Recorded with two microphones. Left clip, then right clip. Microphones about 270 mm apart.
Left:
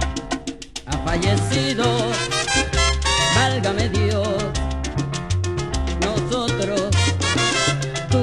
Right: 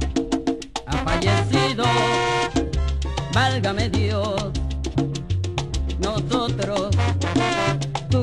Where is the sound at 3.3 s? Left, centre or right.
Right.